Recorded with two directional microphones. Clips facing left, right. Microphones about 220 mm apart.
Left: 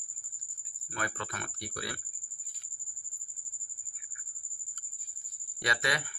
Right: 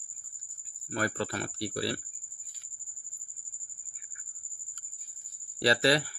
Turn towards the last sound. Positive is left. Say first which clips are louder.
# right 9 dB
turn(degrees=-35)  # may be behind; listen again after turning